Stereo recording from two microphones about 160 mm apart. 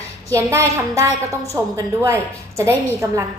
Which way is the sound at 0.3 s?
15° right (ahead or behind).